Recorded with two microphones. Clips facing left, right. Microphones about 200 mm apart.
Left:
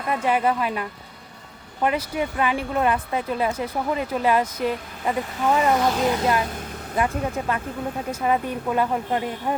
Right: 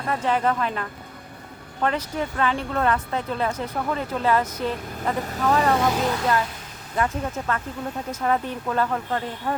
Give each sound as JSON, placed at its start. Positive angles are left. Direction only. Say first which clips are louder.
{"t": 0.1, "sound": "speech", "louder": "left 1 dB", "side_deg": 10}